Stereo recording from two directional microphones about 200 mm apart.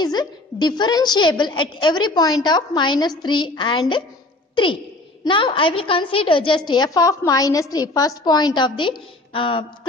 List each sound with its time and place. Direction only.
0.0 s a woman's voice: 20° left (ahead or behind)
5.2 s a woman's voice: 25° left (ahead or behind)